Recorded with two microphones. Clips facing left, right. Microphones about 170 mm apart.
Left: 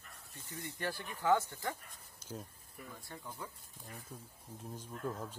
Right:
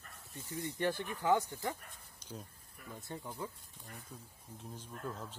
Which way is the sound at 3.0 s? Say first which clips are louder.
Right 6 dB; 20° right (ahead or behind).